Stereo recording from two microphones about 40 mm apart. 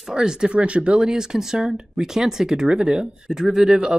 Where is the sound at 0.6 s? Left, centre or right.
Right.